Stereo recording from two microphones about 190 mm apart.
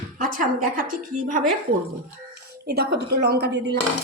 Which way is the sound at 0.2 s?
45° right (ahead or behind).